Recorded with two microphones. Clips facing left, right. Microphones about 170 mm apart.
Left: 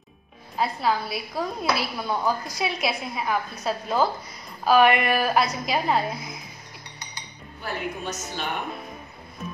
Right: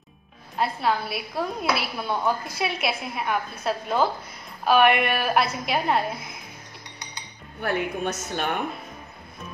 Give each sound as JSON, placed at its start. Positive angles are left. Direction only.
{"t": 0.6, "sound": "a woman's voice", "side_deg": 0}
{"t": 7.6, "sound": "a woman's voice", "side_deg": -55}